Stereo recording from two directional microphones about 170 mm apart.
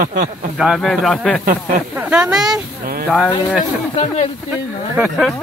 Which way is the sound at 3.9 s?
40° left (ahead or behind).